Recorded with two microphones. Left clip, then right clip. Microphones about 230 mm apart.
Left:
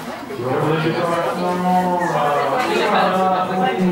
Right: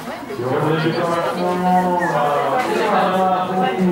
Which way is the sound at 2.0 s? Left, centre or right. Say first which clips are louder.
Even; centre.